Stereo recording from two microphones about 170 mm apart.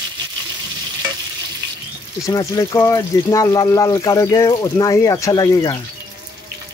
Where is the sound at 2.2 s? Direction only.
20° left (ahead or behind).